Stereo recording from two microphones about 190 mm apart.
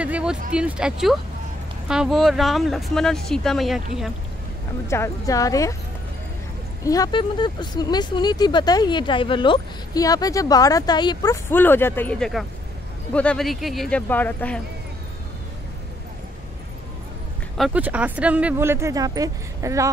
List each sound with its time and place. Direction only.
0.0 s a sound: 5° right (ahead or behind)
0.5 s speech: 5° right (ahead or behind)
4.8 s speech: 15° left (ahead or behind)
6.8 s speech: 20° left (ahead or behind)
11.5 s speech: 10° left (ahead or behind)
17.6 s speech: 5° right (ahead or behind)